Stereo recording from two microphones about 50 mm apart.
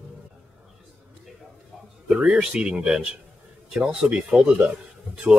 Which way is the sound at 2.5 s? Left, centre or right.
Centre.